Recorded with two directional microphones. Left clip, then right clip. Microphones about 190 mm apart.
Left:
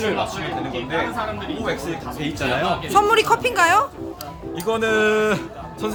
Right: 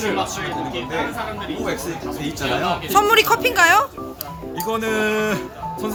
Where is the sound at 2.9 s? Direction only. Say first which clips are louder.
Right 1 dB; centre (ahead or behind).